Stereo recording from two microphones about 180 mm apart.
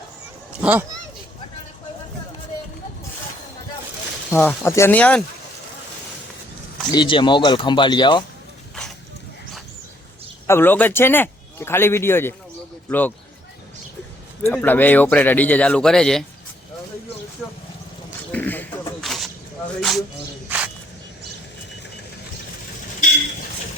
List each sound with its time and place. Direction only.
0.6 s speech: 10° right (ahead or behind)
4.3 s speech: 10° left (ahead or behind)
6.9 s speech: 25° left (ahead or behind)
10.4 s a man's voice: 10° left (ahead or behind)
14.4 s speech: 10° left (ahead or behind)
18.3 s a sound: 10° left (ahead or behind)
19.8 s speech: centre (ahead or behind)